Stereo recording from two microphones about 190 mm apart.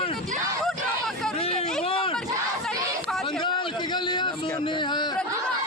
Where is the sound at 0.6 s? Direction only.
Centre (ahead or behind).